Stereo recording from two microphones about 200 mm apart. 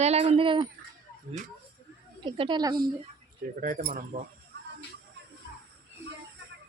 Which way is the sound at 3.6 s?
40° right (ahead or behind).